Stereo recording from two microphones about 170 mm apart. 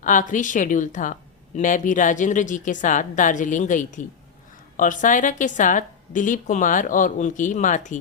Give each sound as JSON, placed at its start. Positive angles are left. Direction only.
{"t": 0.0, "sound": "a woman's voice", "side_deg": 50}